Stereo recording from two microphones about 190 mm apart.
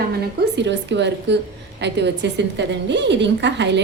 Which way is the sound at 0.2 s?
65° right (ahead or behind).